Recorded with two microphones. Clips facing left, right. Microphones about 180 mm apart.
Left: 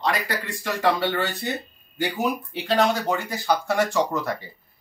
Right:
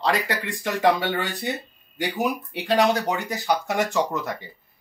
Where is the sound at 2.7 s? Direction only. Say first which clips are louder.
Right 1 dB; 15° right (ahead or behind).